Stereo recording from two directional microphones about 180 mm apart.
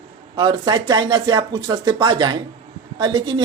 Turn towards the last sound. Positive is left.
turn(degrees=-25)  # may be behind; listen again after turning